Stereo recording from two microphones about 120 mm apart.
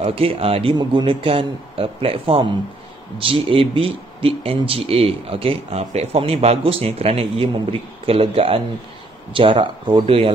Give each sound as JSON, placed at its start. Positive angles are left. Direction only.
{"t": 0.0, "sound": "speech", "side_deg": -50}